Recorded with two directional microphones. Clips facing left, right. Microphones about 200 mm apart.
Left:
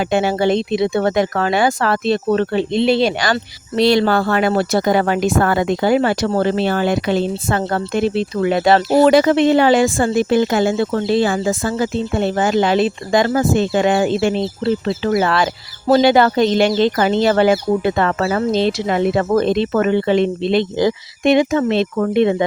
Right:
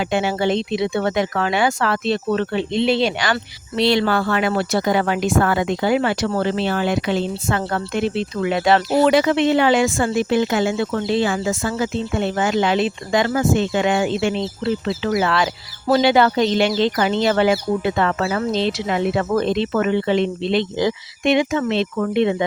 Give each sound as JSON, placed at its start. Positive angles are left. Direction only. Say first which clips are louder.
{"t": 0.0, "sound": "speech", "louder": "left 4 dB", "side_deg": 45}